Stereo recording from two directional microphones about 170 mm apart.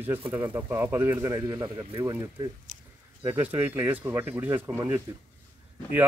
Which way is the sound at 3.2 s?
10° right (ahead or behind).